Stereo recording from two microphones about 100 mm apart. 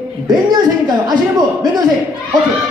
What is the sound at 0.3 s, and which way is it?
A man's voice, 45° right (ahead or behind).